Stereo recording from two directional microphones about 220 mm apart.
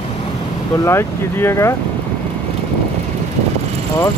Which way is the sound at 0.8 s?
10° left (ahead or behind).